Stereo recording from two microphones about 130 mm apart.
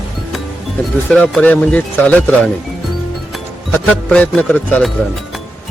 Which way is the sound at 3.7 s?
10° left (ahead or behind).